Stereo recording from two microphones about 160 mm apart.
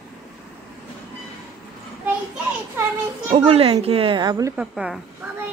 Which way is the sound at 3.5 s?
40° right (ahead or behind).